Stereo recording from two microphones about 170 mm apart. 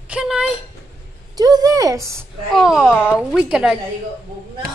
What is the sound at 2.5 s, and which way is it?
Speech, centre (ahead or behind).